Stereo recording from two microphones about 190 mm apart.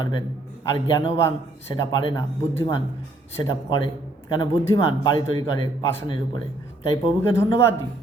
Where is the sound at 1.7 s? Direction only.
25° left (ahead or behind).